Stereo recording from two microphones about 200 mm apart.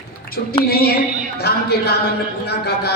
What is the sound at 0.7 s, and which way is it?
A man's voice, 50° left (ahead or behind).